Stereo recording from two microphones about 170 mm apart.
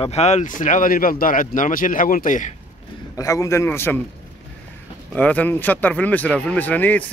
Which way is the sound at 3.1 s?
20° left (ahead or behind).